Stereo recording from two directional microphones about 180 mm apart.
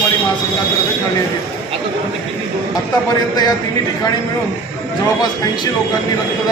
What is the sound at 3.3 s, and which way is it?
Speech, 20° left (ahead or behind).